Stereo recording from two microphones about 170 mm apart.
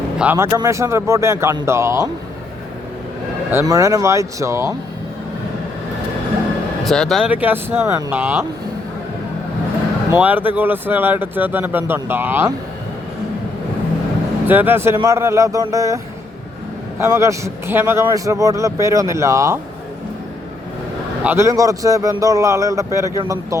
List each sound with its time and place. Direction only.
0.2 s a man's voice: 10° right (ahead or behind)
3.7 s a man's voice: 20° right (ahead or behind)
6.8 s a man's voice: centre (ahead or behind)
10.1 s a man's voice: 10° right (ahead or behind)
14.4 s a man's voice: 10° right (ahead or behind)
17.0 s a man's voice: 15° right (ahead or behind)
21.2 s a man's voice: 15° right (ahead or behind)